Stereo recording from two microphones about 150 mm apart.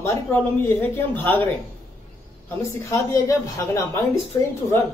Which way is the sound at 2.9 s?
20° left (ahead or behind).